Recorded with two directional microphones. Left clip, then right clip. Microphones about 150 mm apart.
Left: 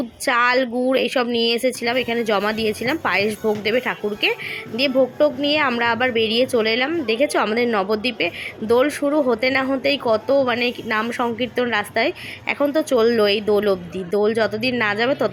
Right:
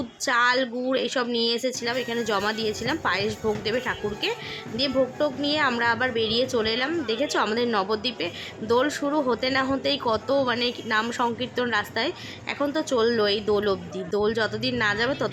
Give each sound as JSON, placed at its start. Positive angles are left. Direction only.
{"t": 0.3, "sound": "speech", "side_deg": 15}
{"t": 6.1, "sound": "a woman's voice", "side_deg": -45}
{"t": 6.4, "sound": "speech", "side_deg": 15}